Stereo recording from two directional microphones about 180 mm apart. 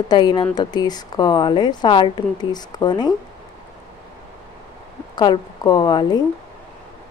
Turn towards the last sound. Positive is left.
turn(degrees=25)  # may be behind; listen again after turning